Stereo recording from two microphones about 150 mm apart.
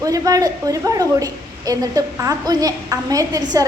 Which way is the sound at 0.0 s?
25° right (ahead or behind).